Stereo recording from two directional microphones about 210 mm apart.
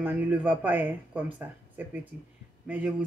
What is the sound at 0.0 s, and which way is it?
Speech, 10° right (ahead or behind).